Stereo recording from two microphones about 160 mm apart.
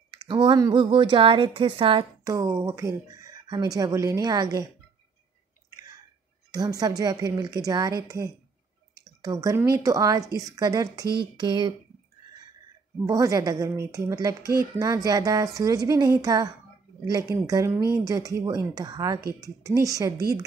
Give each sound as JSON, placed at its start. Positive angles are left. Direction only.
{"t": 0.1, "sound": "speech", "side_deg": -25}
{"t": 2.3, "sound": "speech", "side_deg": -20}
{"t": 6.5, "sound": "speech", "side_deg": -25}
{"t": 13.0, "sound": "speech", "side_deg": -20}